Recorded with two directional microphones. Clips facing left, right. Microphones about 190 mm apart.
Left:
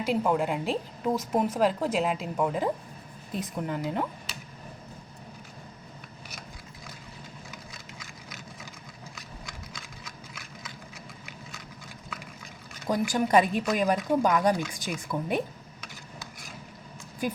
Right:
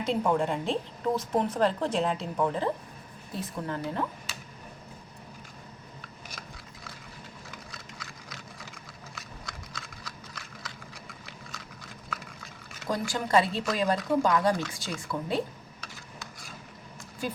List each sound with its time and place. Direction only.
0.0 s speech: 5° left (ahead or behind)
10.0 s a sound: 5° left (ahead or behind)
12.9 s speech: 15° left (ahead or behind)
17.2 s speech: 15° left (ahead or behind)